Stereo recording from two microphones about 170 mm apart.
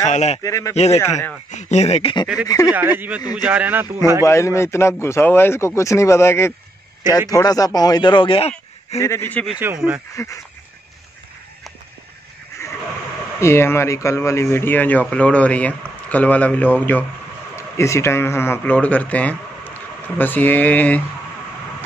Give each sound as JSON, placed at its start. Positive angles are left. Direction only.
{"t": 0.1, "sound": "speech", "side_deg": 40}
{"t": 0.4, "sound": "speech", "side_deg": 20}
{"t": 0.7, "sound": "speech", "side_deg": 40}
{"t": 1.0, "sound": "speech", "side_deg": 15}
{"t": 1.5, "sound": "speech", "side_deg": 45}
{"t": 2.4, "sound": "speech", "side_deg": 20}
{"t": 2.7, "sound": "speech", "side_deg": -10}
{"t": 4.2, "sound": "speech", "side_deg": 15}
{"t": 8.9, "sound": "speech", "side_deg": 15}
{"t": 10.1, "sound": "speech", "side_deg": 20}
{"t": 12.6, "sound": "a sound", "side_deg": 15}
{"t": 13.4, "sound": "speech", "side_deg": 15}